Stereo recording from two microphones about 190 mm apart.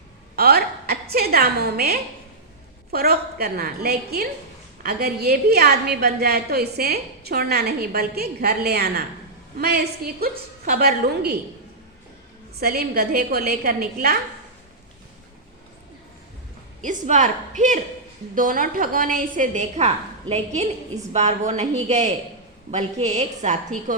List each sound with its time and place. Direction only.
0.3 s a woman's voice: 55° right (ahead or behind)
12.5 s a woman's voice: 55° right (ahead or behind)
16.8 s a woman's voice: 40° right (ahead or behind)